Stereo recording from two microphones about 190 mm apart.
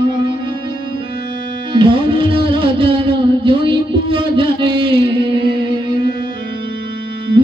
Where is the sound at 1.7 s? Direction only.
25° right (ahead or behind).